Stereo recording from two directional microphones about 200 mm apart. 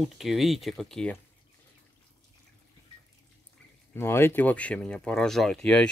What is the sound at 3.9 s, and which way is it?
Speech, 10° left (ahead or behind).